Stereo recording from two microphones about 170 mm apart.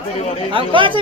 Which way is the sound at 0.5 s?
30° right (ahead or behind).